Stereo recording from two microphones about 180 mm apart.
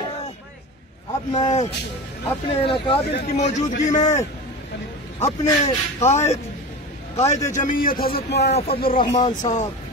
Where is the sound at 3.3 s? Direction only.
40° left (ahead or behind).